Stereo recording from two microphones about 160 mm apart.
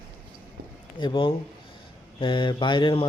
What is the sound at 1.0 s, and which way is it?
A man's voice, 30° left (ahead or behind).